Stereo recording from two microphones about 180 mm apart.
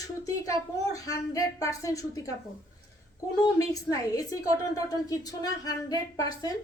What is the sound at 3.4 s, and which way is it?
A woman's voice, 20° left (ahead or behind).